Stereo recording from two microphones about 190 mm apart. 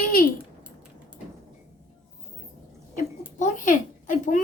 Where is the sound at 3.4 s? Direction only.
45° left (ahead or behind).